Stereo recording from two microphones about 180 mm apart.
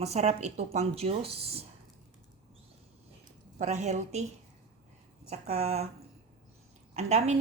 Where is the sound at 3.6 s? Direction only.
40° right (ahead or behind).